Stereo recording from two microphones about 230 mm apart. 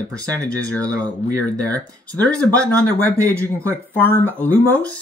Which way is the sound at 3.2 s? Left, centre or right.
Centre.